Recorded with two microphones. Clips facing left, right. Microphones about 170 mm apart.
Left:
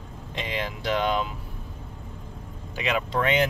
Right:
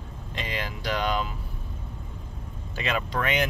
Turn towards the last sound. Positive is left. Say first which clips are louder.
# left 3 dB
turn(degrees=25)  # may be behind; listen again after turning